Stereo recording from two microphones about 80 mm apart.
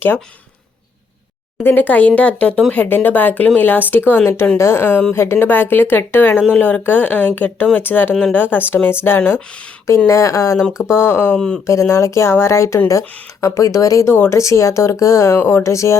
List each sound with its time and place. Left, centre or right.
1.6 s speech: left
10.1 s speech: left
10.6 s speech: centre
10.9 s speech: left
11.3 s speech: centre
11.6 s speech: left